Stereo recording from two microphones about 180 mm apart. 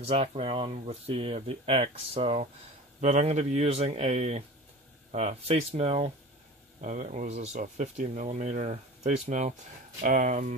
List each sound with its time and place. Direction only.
0.0 s speech: 35° right (ahead or behind)